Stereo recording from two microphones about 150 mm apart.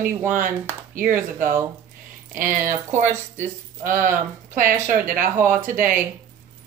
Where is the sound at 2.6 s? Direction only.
55° right (ahead or behind).